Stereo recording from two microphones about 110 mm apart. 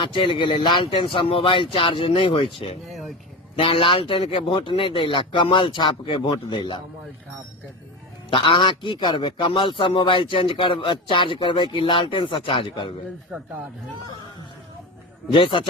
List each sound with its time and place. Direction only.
0.0 s a man's voice: 50° left (ahead or behind)
8.3 s a man's voice: 50° left (ahead or behind)
15.3 s a man's voice: 50° left (ahead or behind)